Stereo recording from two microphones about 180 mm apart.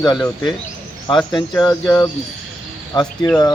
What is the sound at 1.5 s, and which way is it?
Speech, 5° left (ahead or behind).